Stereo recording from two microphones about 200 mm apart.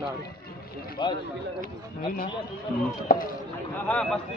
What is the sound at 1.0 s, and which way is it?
Speech, 25° left (ahead or behind).